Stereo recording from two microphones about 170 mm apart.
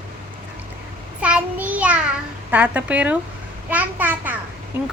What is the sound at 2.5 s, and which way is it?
Speech, 10° right (ahead or behind).